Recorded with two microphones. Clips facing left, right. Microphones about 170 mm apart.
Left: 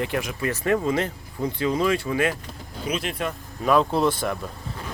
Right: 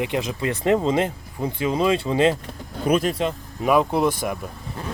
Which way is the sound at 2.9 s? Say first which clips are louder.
Right 8 dB; 50° right (ahead or behind).